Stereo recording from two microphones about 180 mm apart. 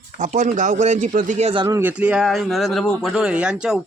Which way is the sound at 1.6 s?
15° right (ahead or behind).